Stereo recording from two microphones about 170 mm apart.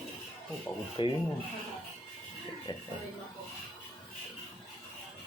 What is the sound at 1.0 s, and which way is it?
Speech, 30° left (ahead or behind).